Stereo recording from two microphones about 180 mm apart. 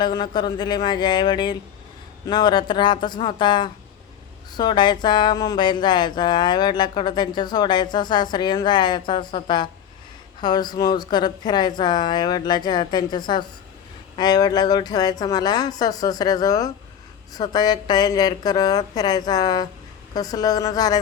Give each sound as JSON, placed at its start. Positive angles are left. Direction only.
{"t": 0.0, "sound": "speech", "side_deg": 25}